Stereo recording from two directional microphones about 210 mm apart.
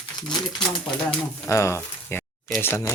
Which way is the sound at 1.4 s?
15° left (ahead or behind).